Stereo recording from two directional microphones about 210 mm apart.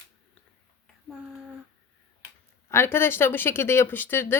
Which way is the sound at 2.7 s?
10° left (ahead or behind).